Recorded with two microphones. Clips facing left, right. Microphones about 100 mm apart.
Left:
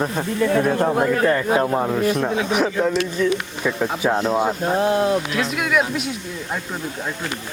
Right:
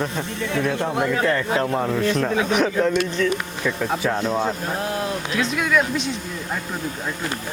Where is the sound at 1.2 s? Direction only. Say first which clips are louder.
Left 3 dB; 20° left (ahead or behind).